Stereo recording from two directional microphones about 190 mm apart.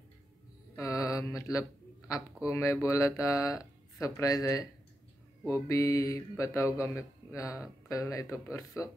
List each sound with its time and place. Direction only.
0.7 s mantra: 15° left (ahead or behind)
2.4 s speech: 15° left (ahead or behind)